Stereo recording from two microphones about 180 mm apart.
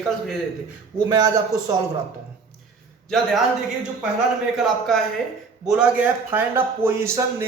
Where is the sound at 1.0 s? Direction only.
20° right (ahead or behind).